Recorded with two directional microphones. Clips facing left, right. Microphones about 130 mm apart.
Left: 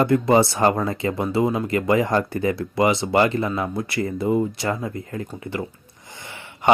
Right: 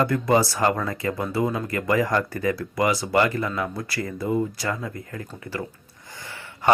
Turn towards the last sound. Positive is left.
turn(degrees=20)  # may be behind; listen again after turning